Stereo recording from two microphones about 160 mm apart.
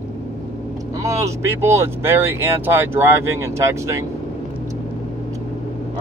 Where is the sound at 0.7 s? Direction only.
20° right (ahead or behind).